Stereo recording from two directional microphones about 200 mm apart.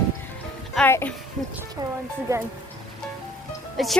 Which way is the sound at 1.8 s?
20° right (ahead or behind).